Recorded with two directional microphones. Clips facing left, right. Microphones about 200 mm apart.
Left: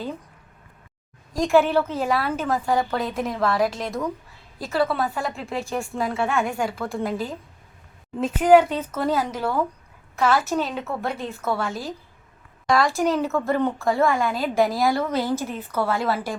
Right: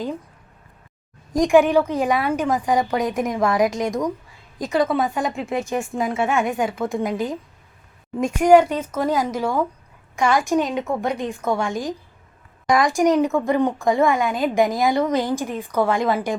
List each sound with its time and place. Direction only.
1.4 s speech: 15° right (ahead or behind)
5.2 s speech: centre (ahead or behind)
6.6 s speech: 20° right (ahead or behind)